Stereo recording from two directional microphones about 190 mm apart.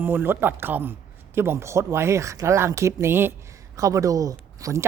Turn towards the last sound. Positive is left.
turn(degrees=-15)  # may be behind; listen again after turning